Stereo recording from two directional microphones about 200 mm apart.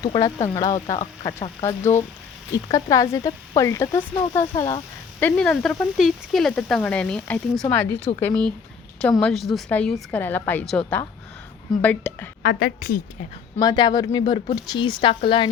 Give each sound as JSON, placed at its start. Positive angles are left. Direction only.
{"t": 0.0, "sound": "speech", "side_deg": 20}
{"t": 0.3, "sound": "speech", "side_deg": 35}
{"t": 1.2, "sound": "speech", "side_deg": 15}
{"t": 5.2, "sound": "speech", "side_deg": 5}
{"t": 12.4, "sound": "a woman's voice", "side_deg": 50}
{"t": 13.6, "sound": "speech", "side_deg": 20}